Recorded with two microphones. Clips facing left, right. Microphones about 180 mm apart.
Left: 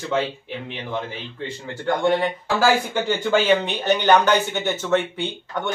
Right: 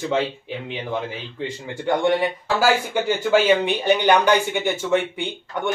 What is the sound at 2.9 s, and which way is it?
Speech, 10° right (ahead or behind).